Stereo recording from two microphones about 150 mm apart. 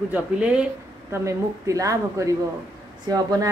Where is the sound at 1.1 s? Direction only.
20° right (ahead or behind).